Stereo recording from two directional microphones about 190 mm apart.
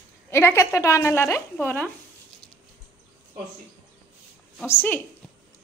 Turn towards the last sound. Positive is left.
turn(degrees=10)  # may be behind; listen again after turning